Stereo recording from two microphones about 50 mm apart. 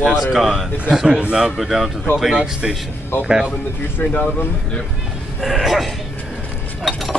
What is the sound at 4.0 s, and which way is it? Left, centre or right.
Speech, left.